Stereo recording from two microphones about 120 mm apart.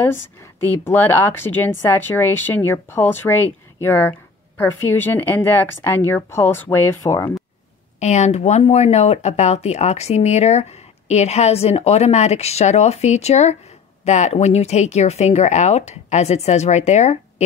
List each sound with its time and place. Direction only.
0.0 s a woman's voice: 20° left (ahead or behind)
8.0 s speech: 70° left (ahead or behind)